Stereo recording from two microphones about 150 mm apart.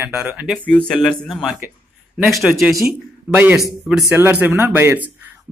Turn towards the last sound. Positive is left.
turn(degrees=-15)  # may be behind; listen again after turning